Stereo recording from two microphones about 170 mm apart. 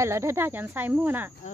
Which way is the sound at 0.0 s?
15° right (ahead or behind).